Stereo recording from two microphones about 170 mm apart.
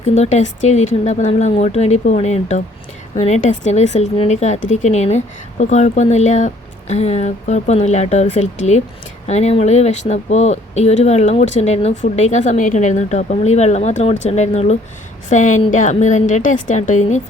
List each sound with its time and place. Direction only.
0.0 s a woman's voice: 40° left (ahead or behind)